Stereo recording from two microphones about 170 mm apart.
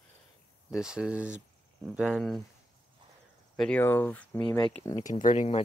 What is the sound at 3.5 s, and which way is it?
Speech, 10° left (ahead or behind).